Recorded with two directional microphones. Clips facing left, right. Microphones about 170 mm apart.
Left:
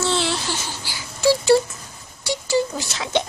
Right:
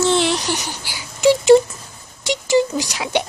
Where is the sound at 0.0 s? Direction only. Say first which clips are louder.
Right 5 dB; 15° right (ahead or behind).